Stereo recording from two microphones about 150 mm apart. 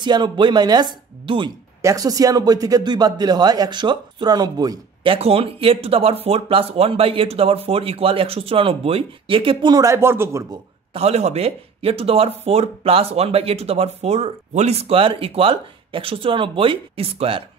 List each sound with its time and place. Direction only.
0.0 s speech: 30° right (ahead or behind)
1.8 s speech: 20° right (ahead or behind)
5.1 s speech: 40° right (ahead or behind); by 10.6 s 20° right (ahead or behind)
10.9 s speech: 45° right (ahead or behind)